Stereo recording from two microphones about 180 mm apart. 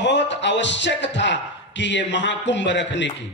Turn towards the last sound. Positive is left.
turn(degrees=80)